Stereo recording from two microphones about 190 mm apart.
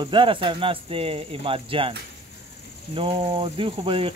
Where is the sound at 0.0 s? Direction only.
25° right (ahead or behind).